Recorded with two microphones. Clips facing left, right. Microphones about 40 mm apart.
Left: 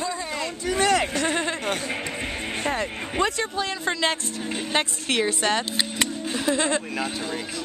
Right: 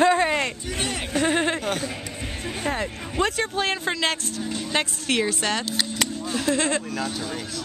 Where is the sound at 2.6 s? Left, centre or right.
Centre.